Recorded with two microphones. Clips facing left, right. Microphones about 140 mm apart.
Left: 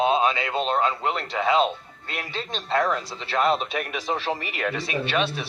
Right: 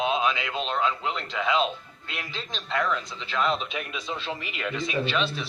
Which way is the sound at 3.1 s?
70° left (ahead or behind).